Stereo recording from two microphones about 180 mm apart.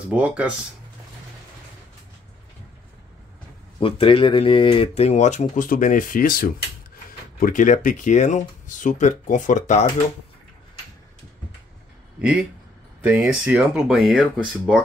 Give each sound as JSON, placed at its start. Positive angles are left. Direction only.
{"t": 0.1, "sound": "speech", "side_deg": -5}
{"t": 3.8, "sound": "speech", "side_deg": 30}
{"t": 12.2, "sound": "speech", "side_deg": -5}